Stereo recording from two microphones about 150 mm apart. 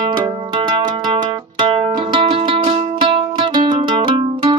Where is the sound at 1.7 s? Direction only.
35° right (ahead or behind).